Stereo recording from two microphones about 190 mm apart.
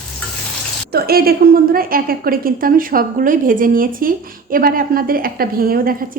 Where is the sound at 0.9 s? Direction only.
55° right (ahead or behind).